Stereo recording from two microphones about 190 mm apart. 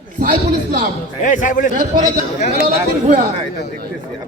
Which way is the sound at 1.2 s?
40° left (ahead or behind).